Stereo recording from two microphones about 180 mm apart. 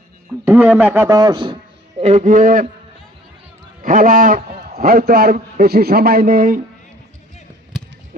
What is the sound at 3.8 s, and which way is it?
A man's voice, 45° right (ahead or behind).